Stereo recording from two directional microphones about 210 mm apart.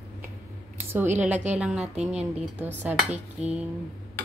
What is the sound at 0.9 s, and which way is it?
Dishes, 10° right (ahead or behind).